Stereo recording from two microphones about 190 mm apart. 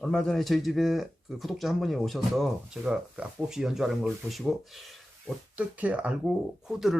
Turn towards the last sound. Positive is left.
turn(degrees=0)  # may be behind; listen again after turning